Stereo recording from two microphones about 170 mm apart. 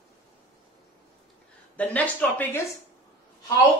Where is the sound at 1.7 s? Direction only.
10° left (ahead or behind).